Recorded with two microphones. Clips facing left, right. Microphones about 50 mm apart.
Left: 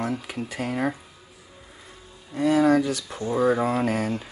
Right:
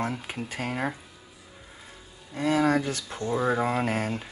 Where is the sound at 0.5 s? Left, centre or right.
Right.